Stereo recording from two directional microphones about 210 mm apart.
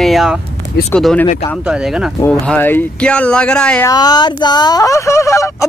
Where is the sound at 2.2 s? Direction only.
10° left (ahead or behind).